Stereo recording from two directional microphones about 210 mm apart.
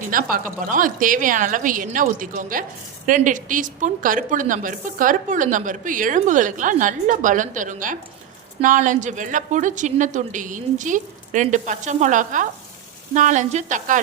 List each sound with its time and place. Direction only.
0.1 s a woman's voice: 40° right (ahead or behind)